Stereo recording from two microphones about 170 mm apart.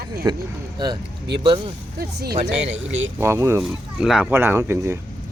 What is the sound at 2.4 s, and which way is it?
Speech, 90° right.